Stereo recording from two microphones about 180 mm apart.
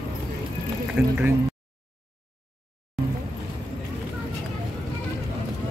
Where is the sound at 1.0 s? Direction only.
10° right (ahead or behind).